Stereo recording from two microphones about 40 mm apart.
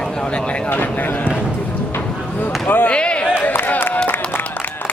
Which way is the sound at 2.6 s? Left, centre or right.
Left.